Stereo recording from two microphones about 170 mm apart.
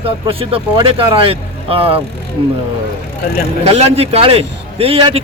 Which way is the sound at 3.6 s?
35° right (ahead or behind).